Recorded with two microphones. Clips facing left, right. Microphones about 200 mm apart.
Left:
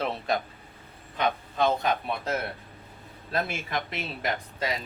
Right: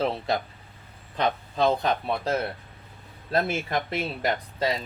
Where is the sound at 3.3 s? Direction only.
40° right (ahead or behind).